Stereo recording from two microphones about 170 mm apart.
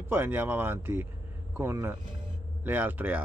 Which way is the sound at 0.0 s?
15° right (ahead or behind).